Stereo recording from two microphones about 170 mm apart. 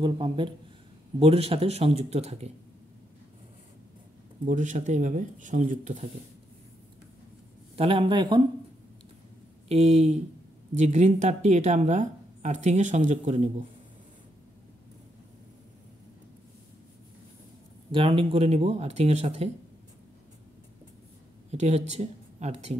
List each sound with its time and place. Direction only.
0.0 s speech: 30° right (ahead or behind)
4.5 s speech: 45° right (ahead or behind)
7.7 s speech: 30° right (ahead or behind)
9.7 s speech: 40° right (ahead or behind)
17.9 s speech: 30° right (ahead or behind)
21.5 s speech: 40° right (ahead or behind)